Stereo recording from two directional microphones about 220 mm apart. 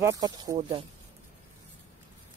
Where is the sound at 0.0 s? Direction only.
15° right (ahead or behind).